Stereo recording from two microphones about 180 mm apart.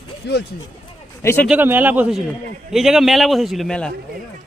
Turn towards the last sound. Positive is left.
turn(degrees=5)  # may be behind; listen again after turning